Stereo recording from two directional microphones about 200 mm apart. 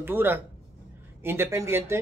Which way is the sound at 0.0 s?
10° right (ahead or behind).